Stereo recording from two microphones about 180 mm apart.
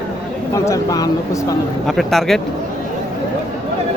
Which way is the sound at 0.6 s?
20° left (ahead or behind).